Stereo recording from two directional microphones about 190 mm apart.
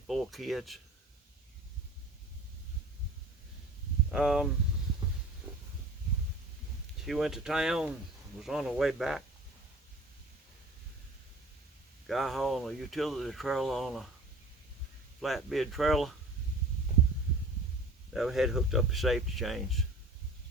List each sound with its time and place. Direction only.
0.1 s speech: centre (ahead or behind)
4.1 s speech: 5° right (ahead or behind)
5.5 s a sound: 10° right (ahead or behind)
7.0 s speech: centre (ahead or behind)
12.0 s speech: centre (ahead or behind)
15.2 s speech: centre (ahead or behind)
18.1 s speech: centre (ahead or behind)